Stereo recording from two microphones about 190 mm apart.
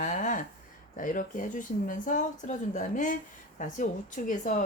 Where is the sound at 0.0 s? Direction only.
40° left (ahead or behind).